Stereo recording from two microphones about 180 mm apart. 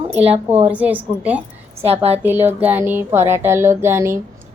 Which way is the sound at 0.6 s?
10° right (ahead or behind).